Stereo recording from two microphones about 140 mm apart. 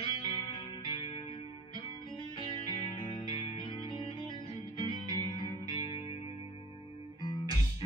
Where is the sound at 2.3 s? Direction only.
35° left (ahead or behind).